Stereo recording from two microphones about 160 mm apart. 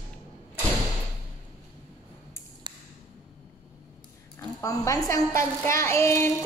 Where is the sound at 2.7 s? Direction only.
30° right (ahead or behind).